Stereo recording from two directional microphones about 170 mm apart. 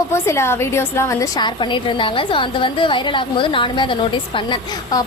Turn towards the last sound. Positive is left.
turn(degrees=25)  # may be behind; listen again after turning